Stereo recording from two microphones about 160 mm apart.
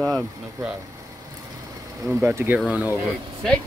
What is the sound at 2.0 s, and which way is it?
Speech, 15° right (ahead or behind).